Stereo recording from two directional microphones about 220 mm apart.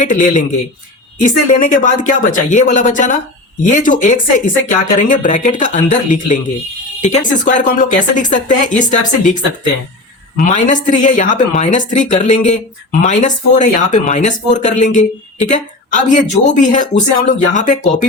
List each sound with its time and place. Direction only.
0.0 s a woman's voice: 35° left (ahead or behind)